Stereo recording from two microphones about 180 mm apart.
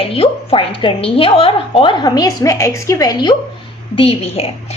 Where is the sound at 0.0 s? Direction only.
30° left (ahead or behind).